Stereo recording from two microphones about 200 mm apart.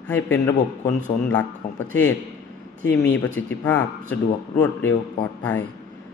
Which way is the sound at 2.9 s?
70° left (ahead or behind).